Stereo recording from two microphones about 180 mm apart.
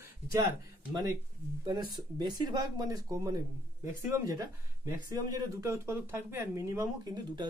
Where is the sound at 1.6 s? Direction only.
25° right (ahead or behind).